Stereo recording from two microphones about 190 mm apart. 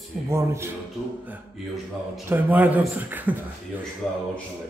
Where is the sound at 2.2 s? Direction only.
10° right (ahead or behind).